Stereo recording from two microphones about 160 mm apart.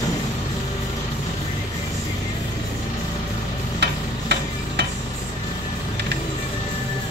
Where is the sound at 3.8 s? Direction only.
90° right.